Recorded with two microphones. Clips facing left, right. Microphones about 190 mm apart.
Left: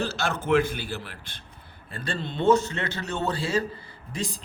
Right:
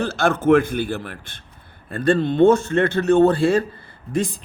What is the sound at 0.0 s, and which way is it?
A man's voice, 55° right (ahead or behind).